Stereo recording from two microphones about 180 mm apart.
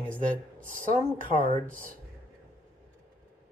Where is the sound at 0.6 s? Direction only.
45° right (ahead or behind).